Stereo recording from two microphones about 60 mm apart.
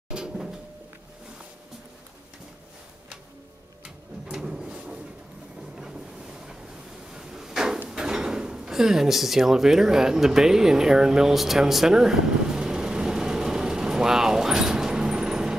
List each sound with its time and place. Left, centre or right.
0.1 s cupboard open or close: centre
4.3 s drawer open or close: centre
5.8 s boat: centre
7.1 s a sound: centre
7.9 s drawer open or close: centre